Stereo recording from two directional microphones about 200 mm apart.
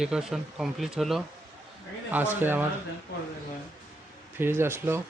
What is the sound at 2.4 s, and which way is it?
Speech, 10° right (ahead or behind).